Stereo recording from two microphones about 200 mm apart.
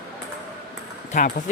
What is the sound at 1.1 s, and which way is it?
Speech, 40° left (ahead or behind).